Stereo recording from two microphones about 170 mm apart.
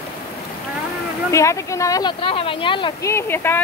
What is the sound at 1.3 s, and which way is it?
Speech, 20° left (ahead or behind).